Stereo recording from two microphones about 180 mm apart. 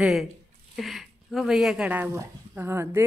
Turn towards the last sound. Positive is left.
turn(degrees=-15)  # may be behind; listen again after turning